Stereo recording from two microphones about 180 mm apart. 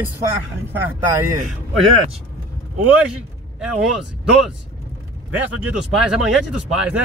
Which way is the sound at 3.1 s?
5° right (ahead or behind).